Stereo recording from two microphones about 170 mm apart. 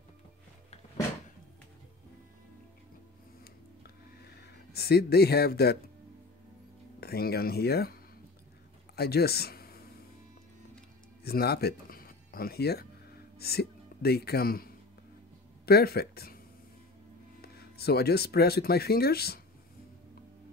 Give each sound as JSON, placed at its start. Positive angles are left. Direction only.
{"t": 3.8, "sound": "a sound", "side_deg": 70}
{"t": 7.0, "sound": "speech", "side_deg": 65}
{"t": 11.2, "sound": "speech", "side_deg": 65}
{"t": 17.4, "sound": "speech", "side_deg": 65}